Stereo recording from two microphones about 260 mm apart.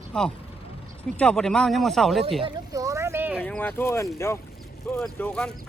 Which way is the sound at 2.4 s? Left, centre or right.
Centre.